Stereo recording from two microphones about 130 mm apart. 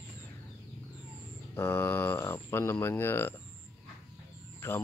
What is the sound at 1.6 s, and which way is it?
Speech, 15° left (ahead or behind).